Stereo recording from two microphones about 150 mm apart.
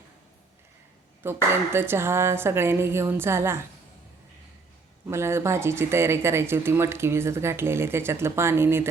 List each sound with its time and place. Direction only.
1.2 s speech: 15° right (ahead or behind)
5.0 s speech: 15° right (ahead or behind)